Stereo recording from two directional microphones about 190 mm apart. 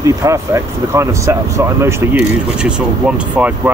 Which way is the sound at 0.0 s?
15° right (ahead or behind).